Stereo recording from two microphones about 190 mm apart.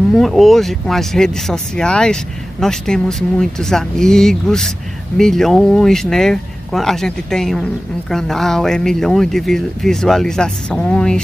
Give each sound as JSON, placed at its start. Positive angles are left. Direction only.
{"t": 0.1, "sound": "speech", "side_deg": 0}